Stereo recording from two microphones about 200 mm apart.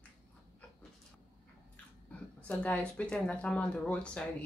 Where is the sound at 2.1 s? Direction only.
5° left (ahead or behind).